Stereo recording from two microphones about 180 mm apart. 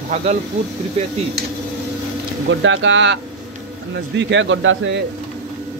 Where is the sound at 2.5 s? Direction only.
90° right.